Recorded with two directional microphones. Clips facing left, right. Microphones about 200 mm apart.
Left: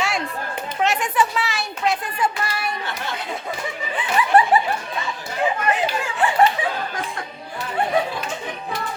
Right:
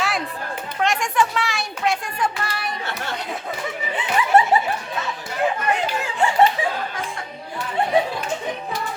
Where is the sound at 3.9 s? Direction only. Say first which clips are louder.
Even; 25° right (ahead or behind).